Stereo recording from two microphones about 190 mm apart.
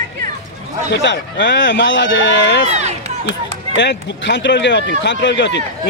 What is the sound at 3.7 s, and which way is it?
Speech, 70° left (ahead or behind).